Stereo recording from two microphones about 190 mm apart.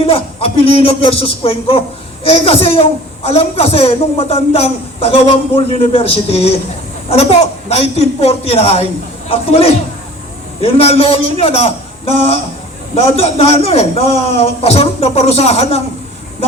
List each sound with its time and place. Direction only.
0.0 s a woman's voice: 30° left (ahead or behind)